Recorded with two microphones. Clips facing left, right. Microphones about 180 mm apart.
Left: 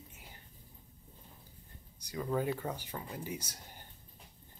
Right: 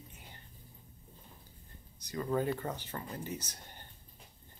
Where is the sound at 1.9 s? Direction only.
10° left (ahead or behind).